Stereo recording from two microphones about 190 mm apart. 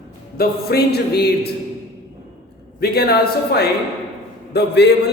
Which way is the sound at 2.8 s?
55° left (ahead or behind).